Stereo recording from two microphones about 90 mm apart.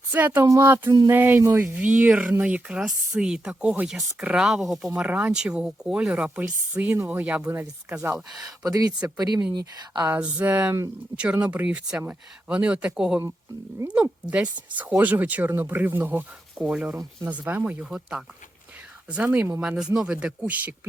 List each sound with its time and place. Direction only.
0.1 s speech: 20° right (ahead or behind)
0.4 s speech: 40° right (ahead or behind)
1.1 s speech: 20° right (ahead or behind); by 4.9 s centre (ahead or behind)
4.9 s speech: 15° right (ahead or behind)
8.1 s speech: 5° right (ahead or behind)
8.6 s speech: 40° right (ahead or behind)
8.9 s speech: 15° right (ahead or behind)
9.1 s speech: 45° right (ahead or behind)
10.2 s speech: 15° right (ahead or behind)